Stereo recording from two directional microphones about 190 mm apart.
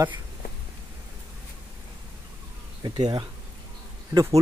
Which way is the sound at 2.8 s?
25° right (ahead or behind).